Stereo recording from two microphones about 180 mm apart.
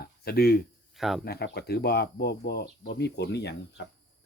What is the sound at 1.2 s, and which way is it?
Speech, 60° left (ahead or behind).